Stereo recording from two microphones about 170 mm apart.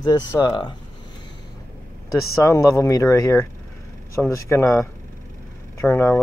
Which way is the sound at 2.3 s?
20° left (ahead or behind).